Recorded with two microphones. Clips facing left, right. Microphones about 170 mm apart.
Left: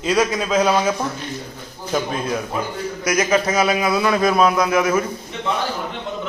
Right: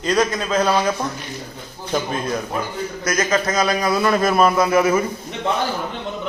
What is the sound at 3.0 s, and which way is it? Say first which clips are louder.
A man's voice: left 2 dB; 10° left (ahead or behind).